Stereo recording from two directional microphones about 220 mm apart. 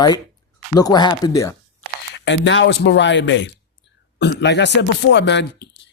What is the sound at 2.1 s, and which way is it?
A man's voice, 55° left (ahead or behind).